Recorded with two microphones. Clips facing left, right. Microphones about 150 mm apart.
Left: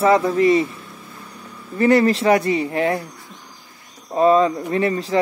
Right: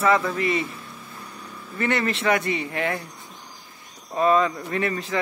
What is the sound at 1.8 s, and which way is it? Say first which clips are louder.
Speech: left 9 dB; 35° left (ahead or behind).